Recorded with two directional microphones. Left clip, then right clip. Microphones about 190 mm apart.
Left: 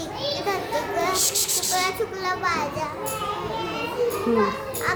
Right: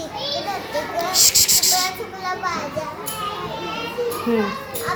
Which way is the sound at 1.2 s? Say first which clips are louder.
Right 8 dB; 5° left (ahead or behind).